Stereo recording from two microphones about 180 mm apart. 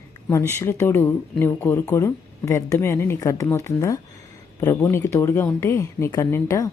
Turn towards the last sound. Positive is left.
turn(degrees=20)  # may be behind; listen again after turning